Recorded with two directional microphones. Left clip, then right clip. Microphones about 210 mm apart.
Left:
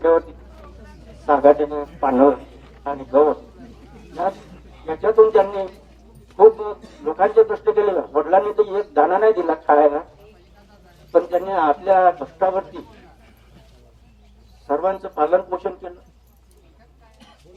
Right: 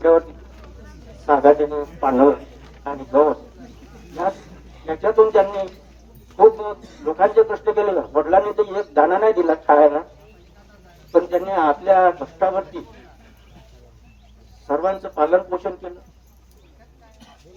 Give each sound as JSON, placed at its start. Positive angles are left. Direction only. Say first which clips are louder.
{"t": 0.0, "sound": "a sound", "louder": "right 2 dB", "side_deg": 40}
{"t": 2.8, "sound": "a man's voice", "louder": "even", "side_deg": 40}
{"t": 4.9, "sound": "speech", "louder": "left 1 dB", "side_deg": 40}
{"t": 6.7, "sound": "a man's voice", "louder": "right 1 dB", "side_deg": 40}
{"t": 11.1, "sound": "a man's voice", "louder": "even", "side_deg": 40}
{"t": 14.8, "sound": "a man's voice", "louder": "right 1 dB", "side_deg": 35}